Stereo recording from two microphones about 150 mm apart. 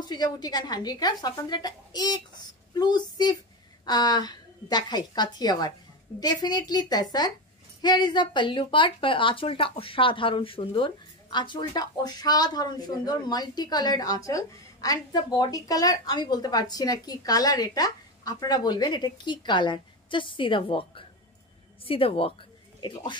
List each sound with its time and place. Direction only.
0.0 s a woman's voice: 30° left (ahead or behind)